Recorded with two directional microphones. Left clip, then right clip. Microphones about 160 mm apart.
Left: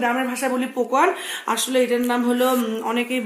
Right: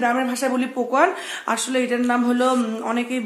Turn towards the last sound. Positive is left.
turn(degrees=-15)  # may be behind; listen again after turning